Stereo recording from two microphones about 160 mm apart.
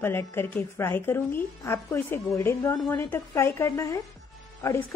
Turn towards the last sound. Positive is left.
turn(degrees=15)  # may be behind; listen again after turning